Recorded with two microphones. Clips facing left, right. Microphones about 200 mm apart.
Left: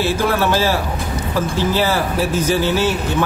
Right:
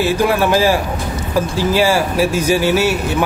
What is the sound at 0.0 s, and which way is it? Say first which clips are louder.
A man's voice: right 3 dB; 15° right (ahead or behind).